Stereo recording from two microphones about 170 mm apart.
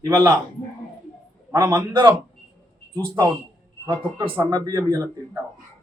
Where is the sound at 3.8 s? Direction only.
25° right (ahead or behind).